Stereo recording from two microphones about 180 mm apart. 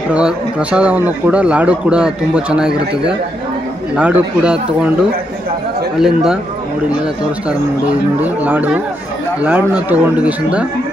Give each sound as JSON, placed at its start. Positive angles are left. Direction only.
{"t": 0.1, "sound": "speech", "side_deg": -5}
{"t": 3.9, "sound": "speech", "side_deg": -5}
{"t": 5.9, "sound": "speech", "side_deg": -5}
{"t": 7.4, "sound": "speech", "side_deg": -10}